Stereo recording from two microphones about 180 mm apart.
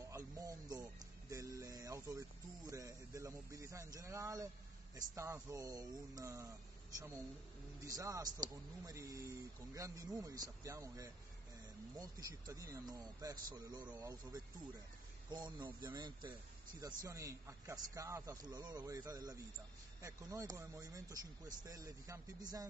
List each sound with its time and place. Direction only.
0.0 s speech: 20° right (ahead or behind)
7.8 s speech: 20° right (ahead or behind)